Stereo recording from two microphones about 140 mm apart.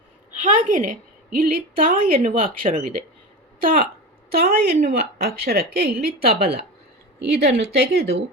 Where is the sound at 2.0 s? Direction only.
75° right (ahead or behind).